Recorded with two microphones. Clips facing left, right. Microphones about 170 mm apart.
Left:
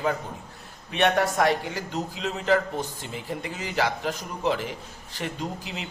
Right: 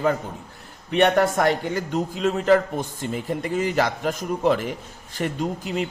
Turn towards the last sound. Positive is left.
turn(degrees=-50)  # may be behind; listen again after turning